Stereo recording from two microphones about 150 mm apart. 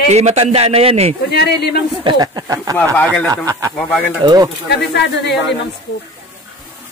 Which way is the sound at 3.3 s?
20° right (ahead or behind).